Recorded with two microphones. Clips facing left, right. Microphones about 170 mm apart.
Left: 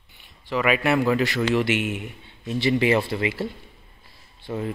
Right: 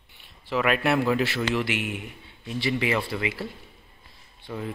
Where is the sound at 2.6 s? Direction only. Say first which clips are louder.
Left 6 dB; 35° left (ahead or behind).